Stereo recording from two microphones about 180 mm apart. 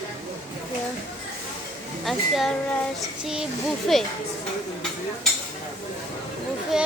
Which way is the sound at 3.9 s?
Centre (ahead or behind).